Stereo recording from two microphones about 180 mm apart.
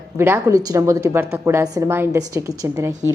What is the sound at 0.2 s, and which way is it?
A woman's voice, 15° right (ahead or behind).